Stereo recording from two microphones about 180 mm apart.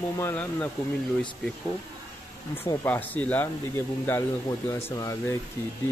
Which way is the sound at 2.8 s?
10° left (ahead or behind).